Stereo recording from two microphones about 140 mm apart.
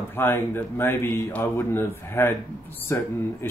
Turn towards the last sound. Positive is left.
turn(degrees=15)  # may be behind; listen again after turning